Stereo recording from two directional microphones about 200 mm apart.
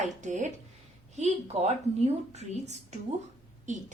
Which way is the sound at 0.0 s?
35° right (ahead or behind).